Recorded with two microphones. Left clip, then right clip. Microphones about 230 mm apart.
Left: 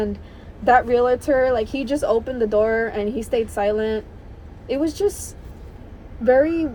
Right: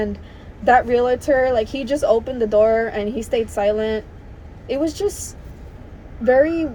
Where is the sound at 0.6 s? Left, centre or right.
Left.